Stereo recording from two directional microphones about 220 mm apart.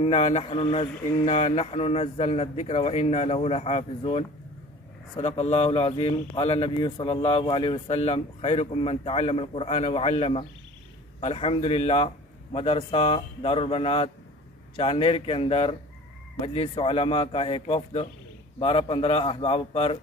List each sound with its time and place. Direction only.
0.0 s a man's voice: 25° left (ahead or behind)